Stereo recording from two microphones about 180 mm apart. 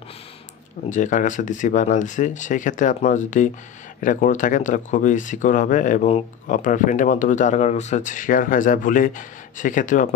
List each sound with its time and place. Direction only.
0.8 s speech: 45° left (ahead or behind)